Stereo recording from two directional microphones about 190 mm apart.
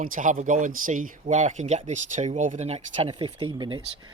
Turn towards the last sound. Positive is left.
turn(degrees=-25)  # may be behind; listen again after turning